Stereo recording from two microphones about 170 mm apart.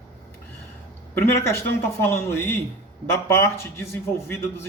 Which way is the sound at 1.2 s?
15° left (ahead or behind).